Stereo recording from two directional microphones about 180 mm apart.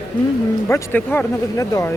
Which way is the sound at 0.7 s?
10° left (ahead or behind).